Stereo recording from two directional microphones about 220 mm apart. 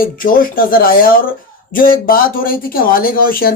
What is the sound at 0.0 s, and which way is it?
Speech, 40° left (ahead or behind).